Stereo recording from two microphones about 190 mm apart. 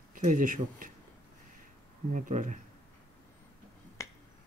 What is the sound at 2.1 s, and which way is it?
Speech, 40° right (ahead or behind).